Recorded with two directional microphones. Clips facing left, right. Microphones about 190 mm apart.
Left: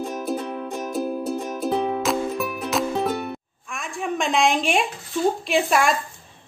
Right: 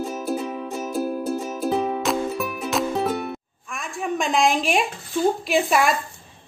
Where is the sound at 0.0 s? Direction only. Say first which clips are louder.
Right 1 dB; 5° right (ahead or behind).